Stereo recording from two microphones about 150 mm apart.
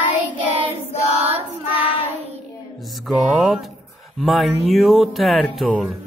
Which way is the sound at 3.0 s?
Centre (ahead or behind).